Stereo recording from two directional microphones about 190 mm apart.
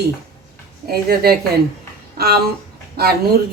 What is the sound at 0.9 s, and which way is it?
Speech, 55° right (ahead or behind).